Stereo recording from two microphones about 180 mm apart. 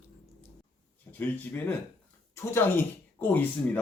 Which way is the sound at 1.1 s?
10° left (ahead or behind).